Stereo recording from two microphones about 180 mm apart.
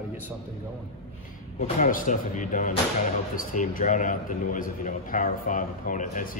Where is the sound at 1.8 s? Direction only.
45° left (ahead or behind).